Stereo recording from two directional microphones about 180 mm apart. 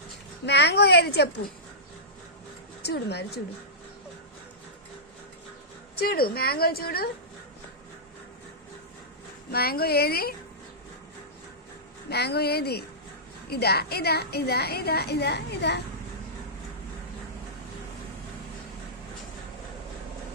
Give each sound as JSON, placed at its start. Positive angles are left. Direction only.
{"t": 0.4, "sound": "a woman's voice", "side_deg": 70}
{"t": 2.8, "sound": "a woman's voice", "side_deg": 65}
{"t": 6.0, "sound": "a woman's voice", "side_deg": 55}
{"t": 9.5, "sound": "a woman's voice", "side_deg": 60}
{"t": 12.0, "sound": "a woman's voice", "side_deg": 65}